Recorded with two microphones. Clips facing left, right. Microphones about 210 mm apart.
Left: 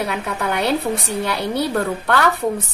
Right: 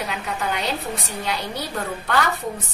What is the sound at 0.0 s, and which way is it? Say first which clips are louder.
A woman's voice: left 4 dB; 60° left (ahead or behind).